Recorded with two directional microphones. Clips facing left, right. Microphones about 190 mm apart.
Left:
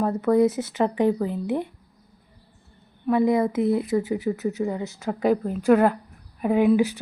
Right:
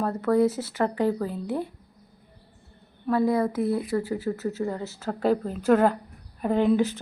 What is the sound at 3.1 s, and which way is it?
A woman's voice, 20° left (ahead or behind).